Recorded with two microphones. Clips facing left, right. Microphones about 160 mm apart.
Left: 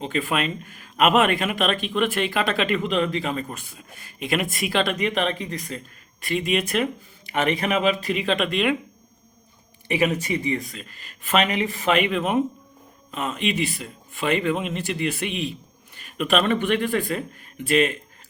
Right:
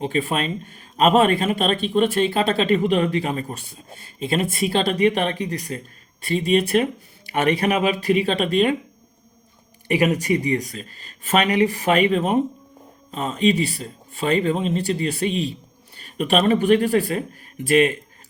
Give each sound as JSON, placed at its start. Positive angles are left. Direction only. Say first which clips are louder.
{"t": 0.0, "sound": "speech", "louder": "right 2 dB", "side_deg": -35}
{"t": 9.9, "sound": "speech", "louder": "right 3 dB", "side_deg": -40}